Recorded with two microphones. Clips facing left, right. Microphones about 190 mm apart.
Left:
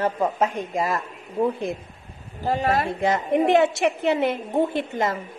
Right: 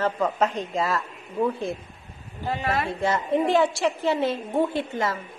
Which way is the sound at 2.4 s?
35° left (ahead or behind).